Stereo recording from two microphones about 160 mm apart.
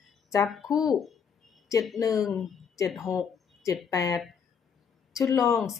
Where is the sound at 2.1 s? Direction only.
Centre (ahead or behind).